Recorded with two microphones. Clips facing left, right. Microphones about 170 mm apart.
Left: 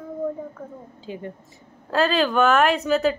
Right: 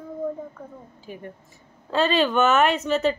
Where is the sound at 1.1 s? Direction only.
25° left (ahead or behind).